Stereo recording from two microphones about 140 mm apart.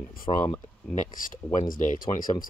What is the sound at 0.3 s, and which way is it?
Speech, 40° left (ahead or behind).